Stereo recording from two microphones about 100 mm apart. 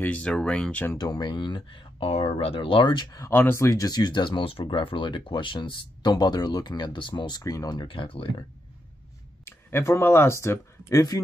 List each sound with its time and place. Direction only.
0.0 s speech: 15° left (ahead or behind)
0.9 s speech: 45° left (ahead or behind)
3.1 s speech: 35° left (ahead or behind)
3.3 s speech: 25° left (ahead or behind); by 8.5 s 60° left (ahead or behind)
9.4 s speech: 25° left (ahead or behind)